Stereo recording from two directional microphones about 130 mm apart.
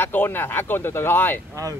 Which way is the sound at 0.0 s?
15° left (ahead or behind).